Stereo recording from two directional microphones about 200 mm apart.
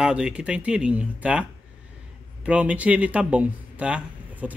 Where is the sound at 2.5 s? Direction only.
5° right (ahead or behind).